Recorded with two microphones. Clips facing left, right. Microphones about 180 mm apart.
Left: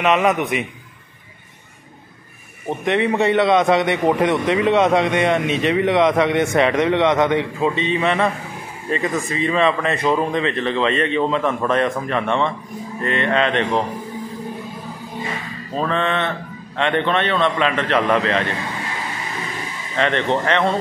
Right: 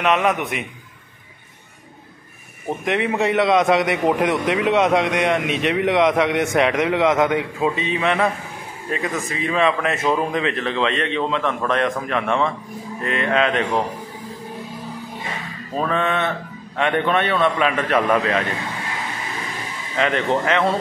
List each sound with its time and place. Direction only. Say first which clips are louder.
0.0 s a man's voice: left 2 dB; centre (ahead or behind)
2.8 s a man's voice: left 3 dB; centre (ahead or behind)
15.7 s a man's voice: even; 5° right (ahead or behind)
20.0 s a man's voice: left 1 dB; 5° right (ahead or behind)